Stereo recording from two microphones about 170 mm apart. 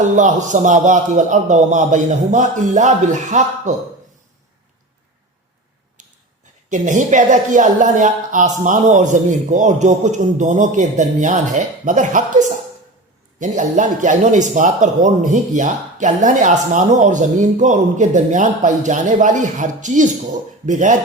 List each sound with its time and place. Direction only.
0.0 s a man's voice: 45° right (ahead or behind)
6.0 s finger snapping: 45° right (ahead or behind)
6.7 s a man's voice: 45° right (ahead or behind)